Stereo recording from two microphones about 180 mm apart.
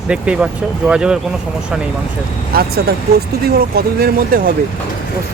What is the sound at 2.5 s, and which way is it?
Speech, 60° right (ahead or behind).